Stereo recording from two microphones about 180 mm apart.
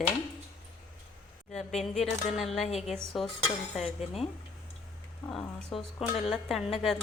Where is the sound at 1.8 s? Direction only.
35° left (ahead or behind).